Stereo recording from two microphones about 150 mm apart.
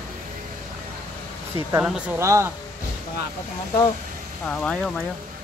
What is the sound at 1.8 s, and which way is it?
Speech, 5° right (ahead or behind).